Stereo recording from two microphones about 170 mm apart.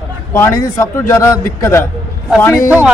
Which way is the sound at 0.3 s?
15° left (ahead or behind).